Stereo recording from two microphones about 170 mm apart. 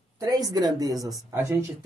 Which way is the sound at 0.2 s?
20° right (ahead or behind).